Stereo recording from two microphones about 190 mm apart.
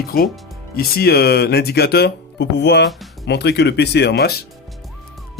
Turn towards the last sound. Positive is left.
turn(degrees=55)  # may be behind; listen again after turning